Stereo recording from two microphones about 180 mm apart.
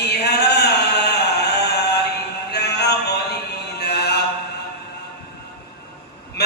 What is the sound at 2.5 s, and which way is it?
Music, 65° left (ahead or behind).